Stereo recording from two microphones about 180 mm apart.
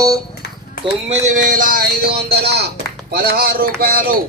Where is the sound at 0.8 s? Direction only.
35° right (ahead or behind); by 4.1 s 55° right (ahead or behind).